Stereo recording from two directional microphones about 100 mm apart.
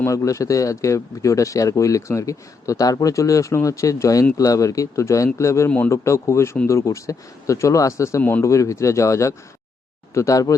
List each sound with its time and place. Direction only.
0.0 s a man's voice: 30° left (ahead or behind)
8.2 s speech: 20° left (ahead or behind)
8.4 s a man's voice: 30° left (ahead or behind)